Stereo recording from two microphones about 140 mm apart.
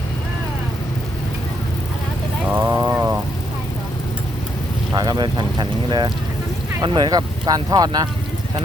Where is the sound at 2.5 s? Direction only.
15° right (ahead or behind).